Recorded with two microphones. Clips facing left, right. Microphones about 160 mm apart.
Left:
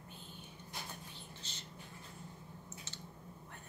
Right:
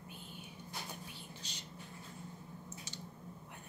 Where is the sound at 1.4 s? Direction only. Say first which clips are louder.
Right 2 dB; 15° right (ahead or behind).